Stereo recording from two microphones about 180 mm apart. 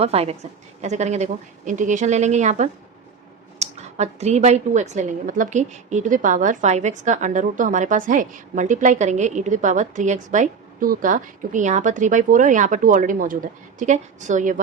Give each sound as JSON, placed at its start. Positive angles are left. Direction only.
{"t": 0.0, "sound": "a woman's voice", "side_deg": -35}